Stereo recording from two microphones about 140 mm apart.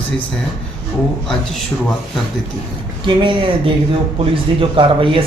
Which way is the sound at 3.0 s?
35° right (ahead or behind).